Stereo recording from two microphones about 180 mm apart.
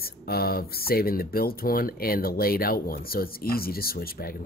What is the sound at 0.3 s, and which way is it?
Speech, 60° left (ahead or behind).